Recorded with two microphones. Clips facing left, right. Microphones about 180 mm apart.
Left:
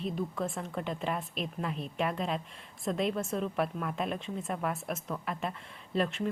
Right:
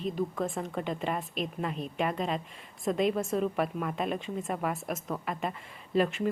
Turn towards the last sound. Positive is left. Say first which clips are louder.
# right 4 dB
turn(degrees=-5)  # may be behind; listen again after turning